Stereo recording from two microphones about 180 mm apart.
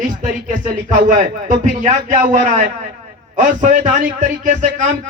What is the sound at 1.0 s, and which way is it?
A man's voice, 50° right (ahead or behind).